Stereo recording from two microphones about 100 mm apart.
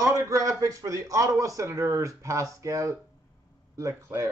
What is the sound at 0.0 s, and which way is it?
A man's voice, 30° right (ahead or behind).